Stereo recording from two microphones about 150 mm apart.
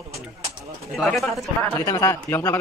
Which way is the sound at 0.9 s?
Centre (ahead or behind).